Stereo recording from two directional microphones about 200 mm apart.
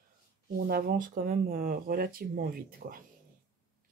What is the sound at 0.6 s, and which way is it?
Speech, 45° right (ahead or behind).